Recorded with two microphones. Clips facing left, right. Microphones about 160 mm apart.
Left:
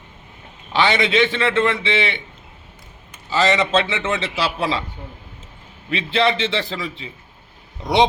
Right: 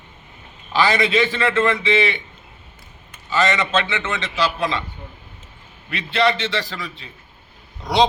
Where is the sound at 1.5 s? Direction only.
5° right (ahead or behind).